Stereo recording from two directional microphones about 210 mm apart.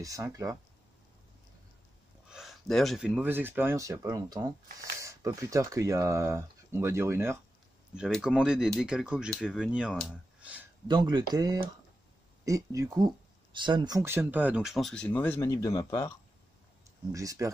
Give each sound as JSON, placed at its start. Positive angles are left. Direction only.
{"t": 0.0, "sound": "speech", "side_deg": -15}
{"t": 2.2, "sound": "speech", "side_deg": 0}
{"t": 10.9, "sound": "speech", "side_deg": -20}
{"t": 17.1, "sound": "speech", "side_deg": -15}